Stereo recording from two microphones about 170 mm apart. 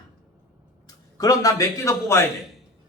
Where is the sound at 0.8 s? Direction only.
20° left (ahead or behind).